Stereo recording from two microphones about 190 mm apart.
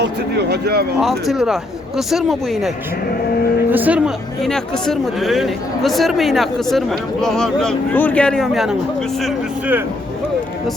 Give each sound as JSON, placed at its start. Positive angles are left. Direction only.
{"t": 0.0, "sound": "speech", "side_deg": -60}
{"t": 0.9, "sound": "speech", "side_deg": 0}